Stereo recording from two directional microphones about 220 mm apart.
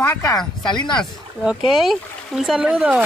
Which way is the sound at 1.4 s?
Centre (ahead or behind).